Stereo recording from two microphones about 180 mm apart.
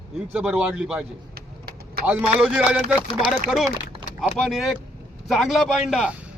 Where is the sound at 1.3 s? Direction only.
60° right (ahead or behind).